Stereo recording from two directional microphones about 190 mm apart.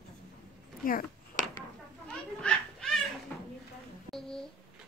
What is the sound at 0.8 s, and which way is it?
Speech, 45° left (ahead or behind).